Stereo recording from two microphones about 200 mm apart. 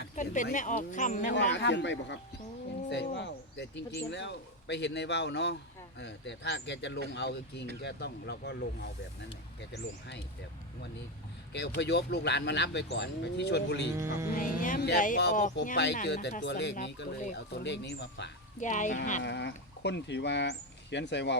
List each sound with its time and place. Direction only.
0.4 s speech: 40° left (ahead or behind)
1.6 s speech: 65° left (ahead or behind)
11.5 s speech: 60° left (ahead or behind)
13.9 s music: 15° right (ahead or behind)
14.3 s speech: 40° left (ahead or behind)
15.2 s speech: 55° left (ahead or behind)
18.6 s speech: 40° left (ahead or behind)
19.2 s speech: 60° left (ahead or behind)